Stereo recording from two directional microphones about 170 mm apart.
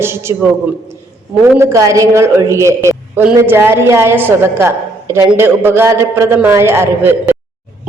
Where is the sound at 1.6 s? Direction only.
15° right (ahead or behind).